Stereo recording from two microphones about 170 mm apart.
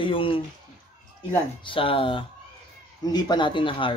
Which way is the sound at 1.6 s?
30° left (ahead or behind).